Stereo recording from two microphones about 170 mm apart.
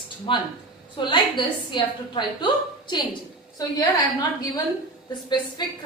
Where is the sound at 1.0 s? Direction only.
25° left (ahead or behind).